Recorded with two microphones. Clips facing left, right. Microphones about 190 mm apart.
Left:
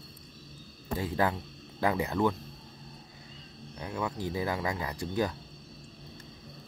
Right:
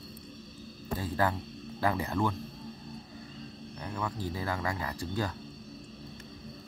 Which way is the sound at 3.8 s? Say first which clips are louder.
Left 2 dB; 10° left (ahead or behind).